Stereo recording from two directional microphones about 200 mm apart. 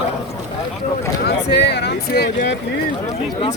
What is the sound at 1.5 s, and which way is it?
Speech, 55° left (ahead or behind).